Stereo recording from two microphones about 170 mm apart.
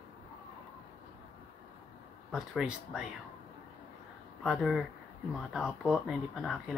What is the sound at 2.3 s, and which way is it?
Speech, centre (ahead or behind).